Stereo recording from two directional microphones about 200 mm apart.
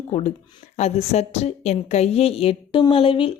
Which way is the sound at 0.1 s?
30° left (ahead or behind).